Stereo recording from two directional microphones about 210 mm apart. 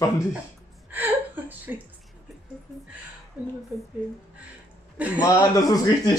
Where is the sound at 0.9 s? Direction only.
10° right (ahead or behind).